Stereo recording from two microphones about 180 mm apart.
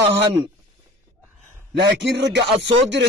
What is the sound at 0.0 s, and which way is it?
Speech, 70° right (ahead or behind).